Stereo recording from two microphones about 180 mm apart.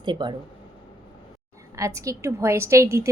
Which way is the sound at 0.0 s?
25° right (ahead or behind).